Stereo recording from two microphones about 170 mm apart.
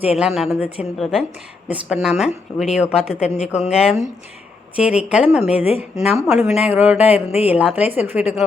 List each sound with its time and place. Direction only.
0.1 s speech: centre (ahead or behind)
3.2 s speech: 40° left (ahead or behind)
3.6 s speech: 5° right (ahead or behind)